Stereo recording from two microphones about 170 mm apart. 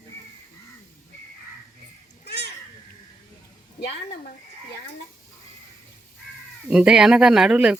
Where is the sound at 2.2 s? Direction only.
75° left (ahead or behind).